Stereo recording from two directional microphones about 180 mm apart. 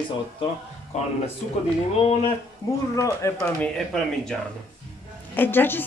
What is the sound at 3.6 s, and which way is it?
Speech, centre (ahead or behind).